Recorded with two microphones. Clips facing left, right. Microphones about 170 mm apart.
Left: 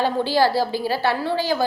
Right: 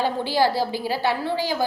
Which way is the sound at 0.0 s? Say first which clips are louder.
Left 2 dB; 15° right (ahead or behind).